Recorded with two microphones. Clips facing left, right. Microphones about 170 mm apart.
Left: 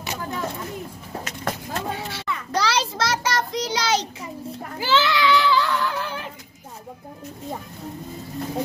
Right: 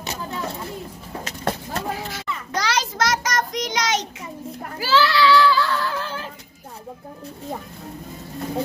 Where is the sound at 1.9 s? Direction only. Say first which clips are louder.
Even; 30° left (ahead or behind).